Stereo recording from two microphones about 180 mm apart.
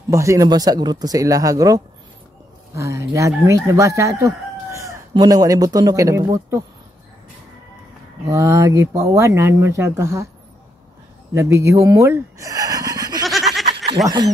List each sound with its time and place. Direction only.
0.1 s speech: 15° right (ahead or behind)
8.3 s speech: 15° right (ahead or behind)
11.3 s speech: 15° right (ahead or behind)
13.2 s a sound: centre (ahead or behind)
14.0 s speech: 20° right (ahead or behind)